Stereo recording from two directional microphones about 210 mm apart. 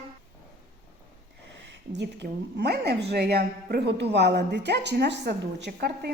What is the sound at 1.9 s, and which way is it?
A woman's voice, 55° right (ahead or behind).